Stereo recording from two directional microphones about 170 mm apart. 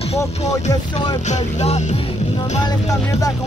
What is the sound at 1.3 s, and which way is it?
Music, 40° left (ahead or behind).